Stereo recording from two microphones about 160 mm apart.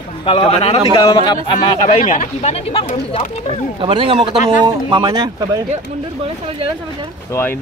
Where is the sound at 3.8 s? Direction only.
30° right (ahead or behind).